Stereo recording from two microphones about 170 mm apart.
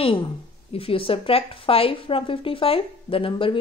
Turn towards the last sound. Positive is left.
turn(degrees=30)  # may be behind; listen again after turning